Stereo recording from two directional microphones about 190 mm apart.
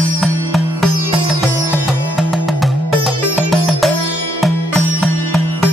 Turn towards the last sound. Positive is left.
turn(degrees=0)  # may be behind; listen again after turning